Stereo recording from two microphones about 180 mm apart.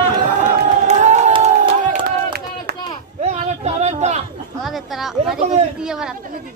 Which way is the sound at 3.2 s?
40° right (ahead or behind).